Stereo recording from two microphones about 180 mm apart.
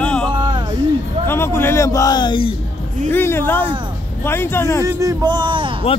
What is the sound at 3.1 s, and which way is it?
A man's voice, 10° left (ahead or behind).